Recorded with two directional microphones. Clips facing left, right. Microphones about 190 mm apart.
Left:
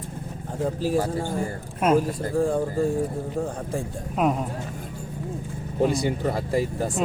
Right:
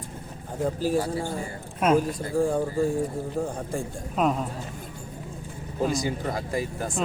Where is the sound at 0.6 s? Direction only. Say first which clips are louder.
Left 1 dB; centre (ahead or behind).